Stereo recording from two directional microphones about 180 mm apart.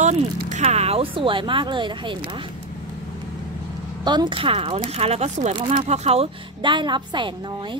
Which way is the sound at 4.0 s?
25° right (ahead or behind).